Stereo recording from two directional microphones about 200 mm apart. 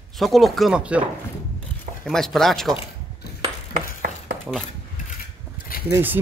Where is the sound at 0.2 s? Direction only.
Centre (ahead or behind).